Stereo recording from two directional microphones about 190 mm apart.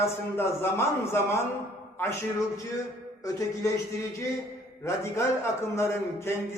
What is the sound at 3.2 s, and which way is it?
Speech, 15° left (ahead or behind).